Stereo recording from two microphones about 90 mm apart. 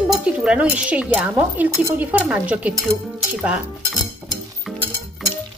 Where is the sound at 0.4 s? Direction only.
10° right (ahead or behind).